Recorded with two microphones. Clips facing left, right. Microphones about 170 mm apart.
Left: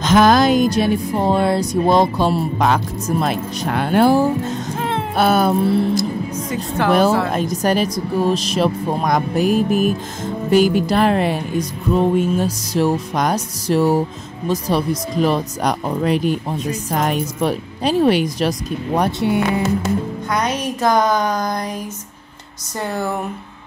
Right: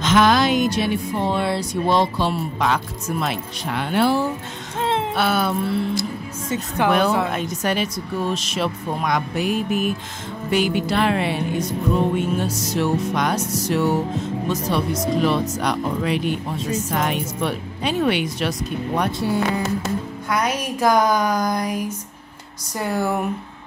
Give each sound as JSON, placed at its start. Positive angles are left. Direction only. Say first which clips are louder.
{"t": 0.0, "sound": "speech", "louder": "left 4 dB", "side_deg": 40}
{"t": 6.9, "sound": "music", "louder": "left 4 dB", "side_deg": 40}
{"t": 19.1, "sound": "speech", "louder": "left 3 dB", "side_deg": 20}
{"t": 20.2, "sound": "music", "louder": "even", "side_deg": -5}